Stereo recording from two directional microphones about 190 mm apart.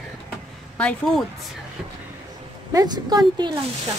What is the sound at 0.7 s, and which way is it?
Speech, 5° left (ahead or behind).